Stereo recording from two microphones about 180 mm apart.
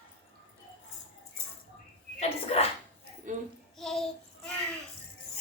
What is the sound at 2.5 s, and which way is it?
Speech, 35° left (ahead or behind).